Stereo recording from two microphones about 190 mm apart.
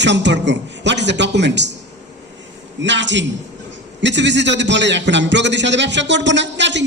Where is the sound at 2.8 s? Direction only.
70° right (ahead or behind).